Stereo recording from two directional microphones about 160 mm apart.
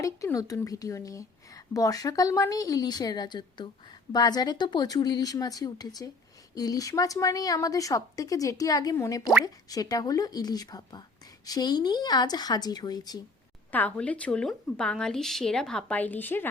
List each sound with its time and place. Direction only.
0.0 s speech: 20° left (ahead or behind)
13.7 s a woman's voice: 10° left (ahead or behind)